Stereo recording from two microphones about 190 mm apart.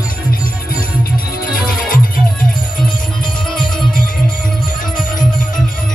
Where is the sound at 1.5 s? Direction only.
50° left (ahead or behind).